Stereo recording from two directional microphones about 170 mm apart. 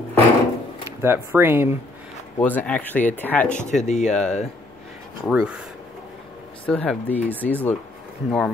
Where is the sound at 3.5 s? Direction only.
45° left (ahead or behind).